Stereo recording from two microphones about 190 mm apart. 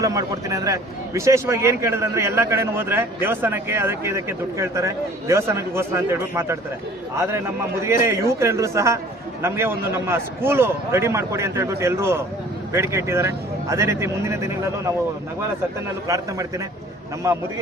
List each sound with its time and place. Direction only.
0.0 s a man's voice: 15° right (ahead or behind)
7.8 s a man's voice: 15° right (ahead or behind)
16.0 s a man's voice: 15° right (ahead or behind)